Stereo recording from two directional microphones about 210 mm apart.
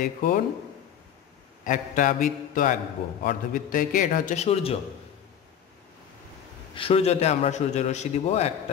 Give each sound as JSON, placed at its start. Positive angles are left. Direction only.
{"t": 0.0, "sound": "a man's voice", "side_deg": 40}
{"t": 1.6, "sound": "a man's voice", "side_deg": 40}
{"t": 6.7, "sound": "a man's voice", "side_deg": 25}